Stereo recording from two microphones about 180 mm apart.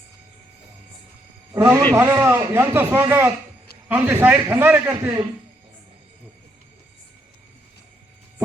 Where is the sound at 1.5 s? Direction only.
15° right (ahead or behind).